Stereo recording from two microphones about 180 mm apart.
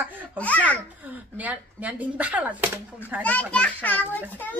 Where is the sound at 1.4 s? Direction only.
10° right (ahead or behind).